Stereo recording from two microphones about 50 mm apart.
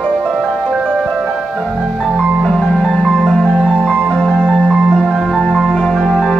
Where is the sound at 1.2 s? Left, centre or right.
Centre.